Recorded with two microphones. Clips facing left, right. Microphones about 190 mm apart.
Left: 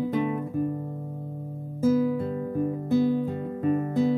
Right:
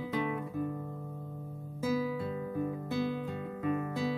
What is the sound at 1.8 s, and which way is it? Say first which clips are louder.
Guitar: left 9 dB; 50° left (ahead or behind).